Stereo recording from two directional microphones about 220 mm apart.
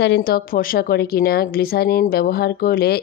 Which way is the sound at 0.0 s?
45° left (ahead or behind).